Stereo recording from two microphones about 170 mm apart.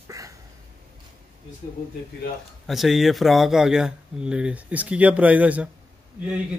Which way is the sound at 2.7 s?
Centre (ahead or behind).